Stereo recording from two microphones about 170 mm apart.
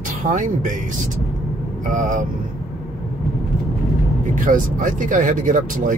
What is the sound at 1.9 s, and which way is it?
Speech, 50° right (ahead or behind).